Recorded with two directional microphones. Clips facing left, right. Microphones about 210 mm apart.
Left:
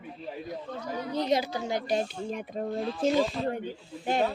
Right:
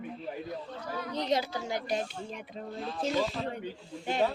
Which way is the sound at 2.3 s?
50° left (ahead or behind).